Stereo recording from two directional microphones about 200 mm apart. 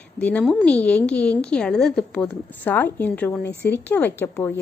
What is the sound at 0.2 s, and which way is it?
A woman's voice, 5° left (ahead or behind).